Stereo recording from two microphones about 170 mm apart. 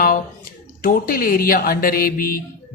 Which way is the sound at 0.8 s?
55° left (ahead or behind).